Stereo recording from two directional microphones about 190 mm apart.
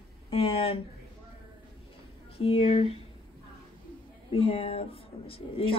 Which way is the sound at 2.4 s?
30° left (ahead or behind).